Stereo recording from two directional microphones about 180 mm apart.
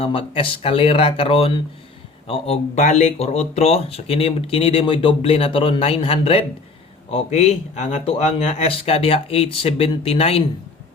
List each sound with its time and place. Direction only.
0.0 s speech: 30° left (ahead or behind)